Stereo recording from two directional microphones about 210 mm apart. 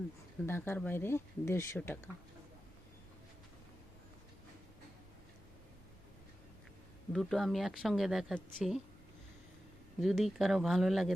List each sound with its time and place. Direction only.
0.4 s speech: 10° left (ahead or behind)
7.1 s speech: centre (ahead or behind)
10.0 s speech: centre (ahead or behind)